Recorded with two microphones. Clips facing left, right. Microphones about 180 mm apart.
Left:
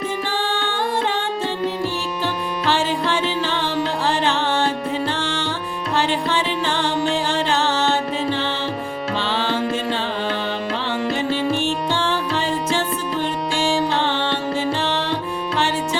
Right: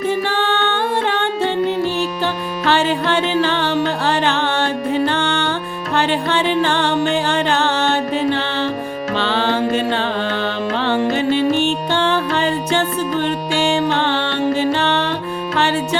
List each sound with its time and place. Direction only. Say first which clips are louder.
0.3 s music: right 5 dB; 65° right (ahead or behind)
2.6 s music: right 4 dB; 65° right (ahead or behind)
10.8 s music: right 6 dB; 65° right (ahead or behind)
14.0 s music: right 3 dB; 65° right (ahead or behind)